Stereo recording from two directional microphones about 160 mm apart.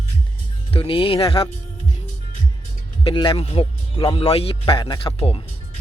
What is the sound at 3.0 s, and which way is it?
Speech, 30° left (ahead or behind).